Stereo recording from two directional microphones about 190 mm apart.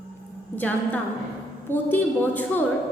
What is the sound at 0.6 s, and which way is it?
A woman's voice, 10° left (ahead or behind).